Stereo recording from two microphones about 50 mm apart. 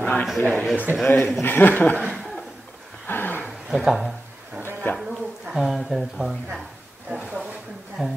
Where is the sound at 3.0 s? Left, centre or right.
Left.